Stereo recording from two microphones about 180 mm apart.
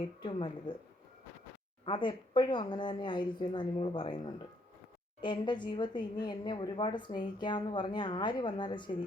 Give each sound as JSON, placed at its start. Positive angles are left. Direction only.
{"t": 0.2, "sound": "a woman's voice", "side_deg": 25}
{"t": 1.8, "sound": "a woman's voice", "side_deg": 25}
{"t": 5.2, "sound": "a woman's voice", "side_deg": 25}